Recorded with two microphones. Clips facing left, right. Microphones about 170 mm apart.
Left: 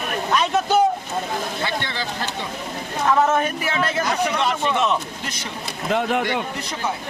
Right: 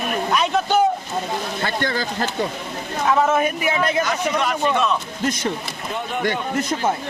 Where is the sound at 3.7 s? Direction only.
15° right (ahead or behind).